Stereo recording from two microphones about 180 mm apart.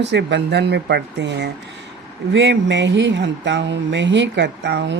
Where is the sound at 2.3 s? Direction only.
85° right.